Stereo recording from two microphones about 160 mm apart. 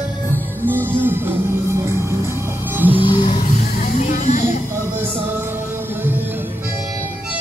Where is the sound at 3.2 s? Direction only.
50° left (ahead or behind).